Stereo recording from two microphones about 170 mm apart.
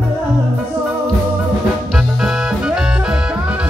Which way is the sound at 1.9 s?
Centre (ahead or behind).